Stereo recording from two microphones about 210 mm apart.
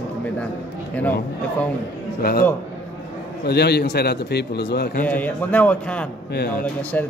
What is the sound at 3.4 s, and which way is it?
A man's voice, 50° left (ahead or behind).